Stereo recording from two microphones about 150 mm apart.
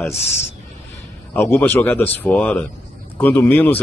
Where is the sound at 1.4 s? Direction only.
15° left (ahead or behind).